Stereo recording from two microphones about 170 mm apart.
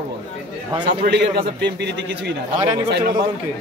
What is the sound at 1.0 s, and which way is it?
A man's voice, 85° right.